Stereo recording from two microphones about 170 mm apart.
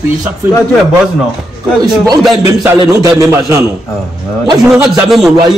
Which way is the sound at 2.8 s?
20° right (ahead or behind).